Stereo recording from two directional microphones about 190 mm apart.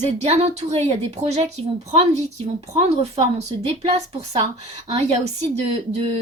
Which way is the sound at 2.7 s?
35° right (ahead or behind).